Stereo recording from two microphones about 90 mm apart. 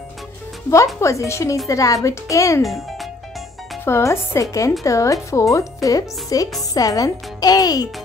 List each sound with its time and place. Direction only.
1.0 s speech: 35° left (ahead or behind)
2.6 s a child's voice: centre (ahead or behind)
3.8 s speech: 30° left (ahead or behind); by 7.9 s 45° left (ahead or behind)